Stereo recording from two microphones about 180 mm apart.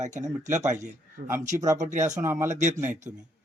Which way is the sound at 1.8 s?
40° right (ahead or behind).